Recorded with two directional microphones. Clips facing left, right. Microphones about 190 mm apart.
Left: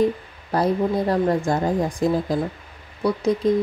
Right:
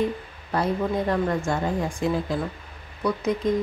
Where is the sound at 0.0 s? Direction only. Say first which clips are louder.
Left 5 dB; 35° left (ahead or behind).